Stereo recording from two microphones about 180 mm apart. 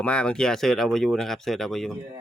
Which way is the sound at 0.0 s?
5° left (ahead or behind).